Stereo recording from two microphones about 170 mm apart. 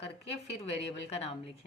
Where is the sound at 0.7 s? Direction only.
35° left (ahead or behind).